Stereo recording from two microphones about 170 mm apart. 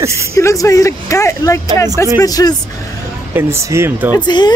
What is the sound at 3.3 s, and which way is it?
Speech, 15° right (ahead or behind).